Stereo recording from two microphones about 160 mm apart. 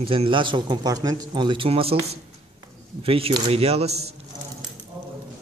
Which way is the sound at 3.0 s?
35° right (ahead or behind).